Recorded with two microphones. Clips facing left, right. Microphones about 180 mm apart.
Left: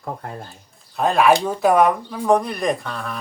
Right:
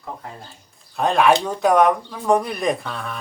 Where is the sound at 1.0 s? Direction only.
Centre (ahead or behind).